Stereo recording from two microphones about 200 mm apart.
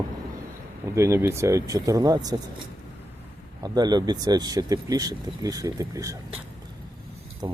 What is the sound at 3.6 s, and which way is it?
Speech, 20° right (ahead or behind).